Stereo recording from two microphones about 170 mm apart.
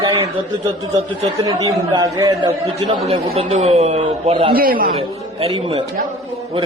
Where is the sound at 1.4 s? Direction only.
20° right (ahead or behind).